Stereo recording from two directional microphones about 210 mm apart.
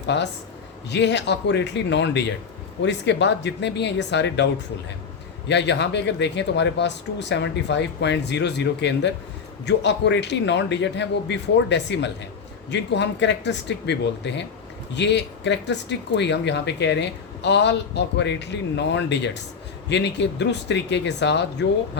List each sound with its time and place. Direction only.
0.1 s speech: 55° left (ahead or behind)
5.5 s speech: 55° left (ahead or behind)